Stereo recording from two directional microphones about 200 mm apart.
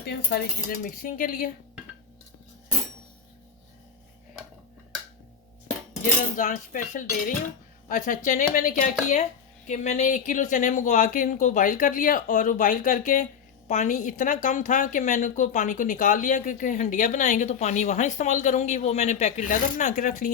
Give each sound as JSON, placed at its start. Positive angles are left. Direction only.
{"t": 0.0, "sound": "speech", "side_deg": 50}
{"t": 6.3, "sound": "a woman's voice", "side_deg": 40}